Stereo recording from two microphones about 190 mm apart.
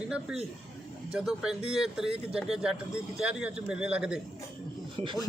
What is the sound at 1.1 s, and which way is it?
A man's voice, 5° right (ahead or behind).